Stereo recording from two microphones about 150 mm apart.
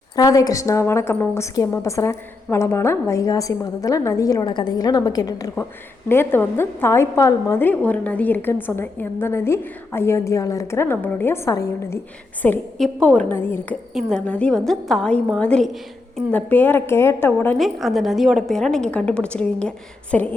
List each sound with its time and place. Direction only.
0.2 s a woman's voice: 25° left (ahead or behind)
12.4 s a woman's voice: 5° left (ahead or behind)
16.5 s a woman's voice: 10° left (ahead or behind)
17.6 s a woman's voice: centre (ahead or behind)